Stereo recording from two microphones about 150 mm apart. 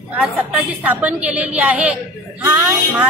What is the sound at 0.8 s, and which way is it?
A woman's voice, 10° right (ahead or behind).